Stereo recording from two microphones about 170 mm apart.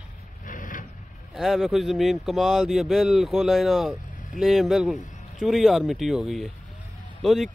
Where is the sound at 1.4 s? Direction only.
Centre (ahead or behind).